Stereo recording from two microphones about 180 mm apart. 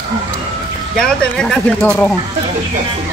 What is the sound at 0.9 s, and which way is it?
Speech, 5° left (ahead or behind).